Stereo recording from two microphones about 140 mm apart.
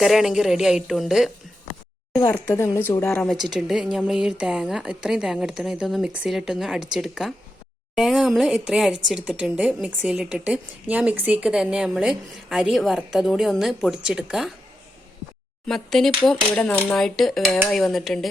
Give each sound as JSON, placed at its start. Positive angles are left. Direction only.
{"t": 0.0, "sound": "a woman's voice", "side_deg": 0}
{"t": 2.5, "sound": "speech", "side_deg": 20}
{"t": 3.4, "sound": "a woman's voice", "side_deg": 0}
{"t": 15.6, "sound": "a woman's voice", "side_deg": 5}